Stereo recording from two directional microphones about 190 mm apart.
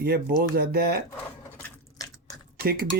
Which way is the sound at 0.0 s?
55° right (ahead or behind).